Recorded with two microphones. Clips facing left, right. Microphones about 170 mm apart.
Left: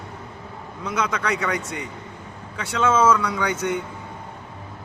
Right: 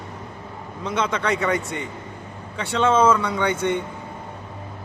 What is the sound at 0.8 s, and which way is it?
Speech, 30° right (ahead or behind).